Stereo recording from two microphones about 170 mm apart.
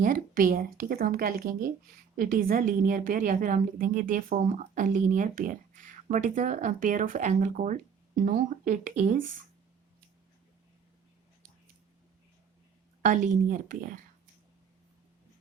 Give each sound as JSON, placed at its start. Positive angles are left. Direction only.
{"t": 0.0, "sound": "a woman's voice", "side_deg": -55}
{"t": 13.0, "sound": "a woman's voice", "side_deg": -50}